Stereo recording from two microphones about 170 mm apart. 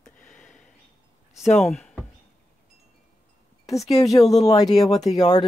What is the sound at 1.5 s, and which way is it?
Speech, centre (ahead or behind).